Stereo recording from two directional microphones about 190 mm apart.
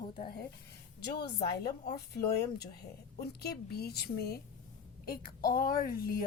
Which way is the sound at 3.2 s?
55° left (ahead or behind).